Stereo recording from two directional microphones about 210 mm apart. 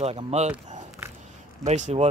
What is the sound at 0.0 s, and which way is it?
Speech, 30° right (ahead or behind).